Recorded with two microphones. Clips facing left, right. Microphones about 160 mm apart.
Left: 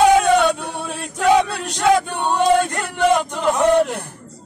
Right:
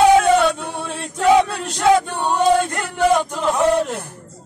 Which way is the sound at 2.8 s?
Centre (ahead or behind).